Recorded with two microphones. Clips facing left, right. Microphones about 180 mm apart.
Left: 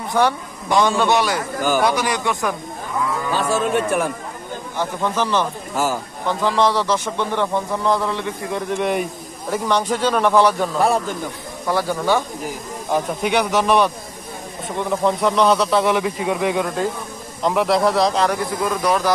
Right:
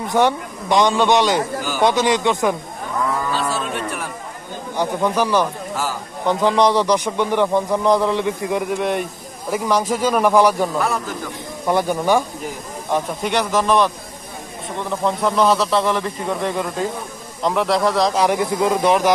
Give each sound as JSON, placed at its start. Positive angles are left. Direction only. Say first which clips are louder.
{"t": 0.1, "sound": "a man's voice", "louder": "right 1 dB", "side_deg": -20}
{"t": 3.4, "sound": "speech", "louder": "left 5 dB", "side_deg": 45}
{"t": 4.7, "sound": "a man's voice", "louder": "right 3 dB", "side_deg": -15}
{"t": 8.7, "sound": "a man's voice", "louder": "even", "side_deg": 0}
{"t": 10.8, "sound": "speech", "louder": "left 4 dB", "side_deg": 30}
{"t": 11.6, "sound": "a man's voice", "louder": "right 2 dB", "side_deg": -20}
{"t": 12.9, "sound": "speech", "louder": "left 1 dB", "side_deg": 5}
{"t": 18.2, "sound": "a man's voice", "louder": "right 3 dB", "side_deg": -20}